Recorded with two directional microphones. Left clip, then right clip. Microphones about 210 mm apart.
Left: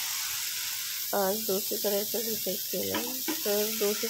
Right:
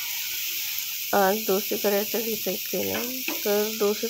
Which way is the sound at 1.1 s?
20° right (ahead or behind).